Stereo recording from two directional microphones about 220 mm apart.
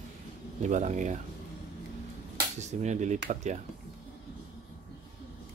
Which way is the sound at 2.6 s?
30° right (ahead or behind).